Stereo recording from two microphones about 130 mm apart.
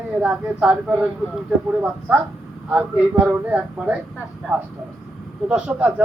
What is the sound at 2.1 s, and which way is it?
A man's voice, 10° right (ahead or behind).